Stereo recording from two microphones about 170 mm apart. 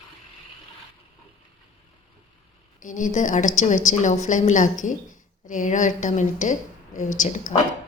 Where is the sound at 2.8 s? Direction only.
50° left (ahead or behind).